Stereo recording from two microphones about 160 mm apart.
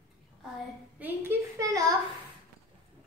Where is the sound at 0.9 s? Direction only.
10° right (ahead or behind).